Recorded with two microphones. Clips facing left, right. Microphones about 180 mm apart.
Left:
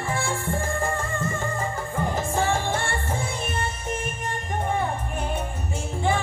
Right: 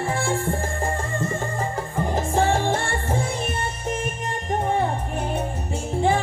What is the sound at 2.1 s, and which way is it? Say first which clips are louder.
Music: right 5 dB; 35° right (ahead or behind).